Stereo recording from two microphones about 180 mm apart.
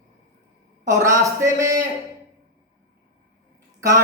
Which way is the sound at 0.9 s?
15° right (ahead or behind).